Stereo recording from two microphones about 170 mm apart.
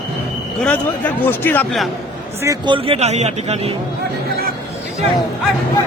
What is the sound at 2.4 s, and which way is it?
Speech, 25° right (ahead or behind).